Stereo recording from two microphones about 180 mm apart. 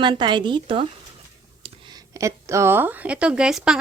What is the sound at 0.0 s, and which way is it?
A woman's voice, 25° right (ahead or behind).